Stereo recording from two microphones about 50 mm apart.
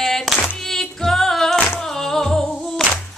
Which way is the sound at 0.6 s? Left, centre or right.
Centre.